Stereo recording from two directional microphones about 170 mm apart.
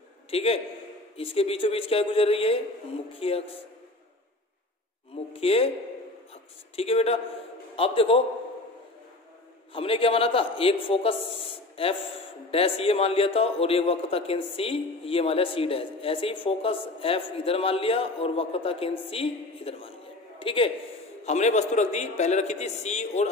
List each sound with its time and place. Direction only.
0.3 s a man's voice: 35° left (ahead or behind)
5.1 s a man's voice: 35° left (ahead or behind)
6.8 s a man's voice: 35° left (ahead or behind)
9.8 s a man's voice: 35° left (ahead or behind)
21.3 s a man's voice: 40° left (ahead or behind)